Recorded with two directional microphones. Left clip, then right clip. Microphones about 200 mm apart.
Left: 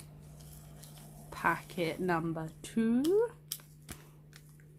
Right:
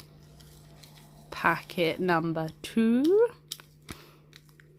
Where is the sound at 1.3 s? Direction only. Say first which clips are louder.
Right 5 dB; 35° right (ahead or behind).